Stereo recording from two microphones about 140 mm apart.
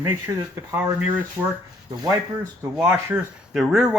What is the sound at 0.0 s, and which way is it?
Speech, 15° right (ahead or behind).